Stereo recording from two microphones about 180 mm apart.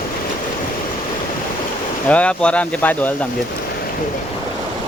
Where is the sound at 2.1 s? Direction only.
5° left (ahead or behind).